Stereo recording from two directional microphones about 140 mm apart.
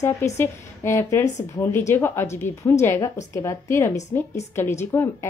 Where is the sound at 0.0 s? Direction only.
20° left (ahead or behind).